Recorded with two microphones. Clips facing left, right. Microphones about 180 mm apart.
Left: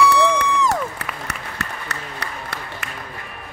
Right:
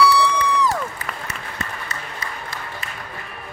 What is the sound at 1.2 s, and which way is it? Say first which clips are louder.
Applause: left 1 dB; 70° left (ahead or behind).